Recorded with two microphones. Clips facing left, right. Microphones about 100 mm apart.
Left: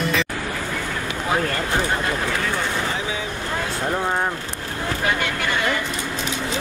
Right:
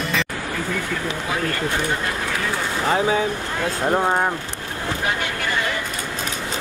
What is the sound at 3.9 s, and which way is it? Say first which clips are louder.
Speech: right 4 dB; 20° right (ahead or behind).